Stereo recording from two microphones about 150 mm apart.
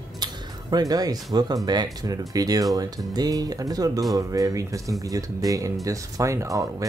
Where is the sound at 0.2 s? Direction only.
25° right (ahead or behind).